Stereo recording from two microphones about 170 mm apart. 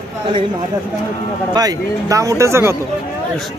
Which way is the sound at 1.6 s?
20° right (ahead or behind).